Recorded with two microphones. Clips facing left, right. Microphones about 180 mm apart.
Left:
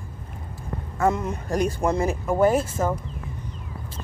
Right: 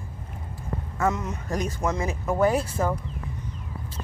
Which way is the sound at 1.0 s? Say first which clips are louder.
Left 4 dB; 30° left (ahead or behind).